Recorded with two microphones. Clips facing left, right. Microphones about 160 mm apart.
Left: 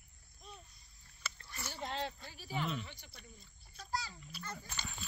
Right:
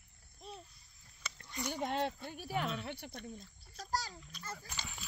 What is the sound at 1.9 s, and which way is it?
Speech, 55° right (ahead or behind).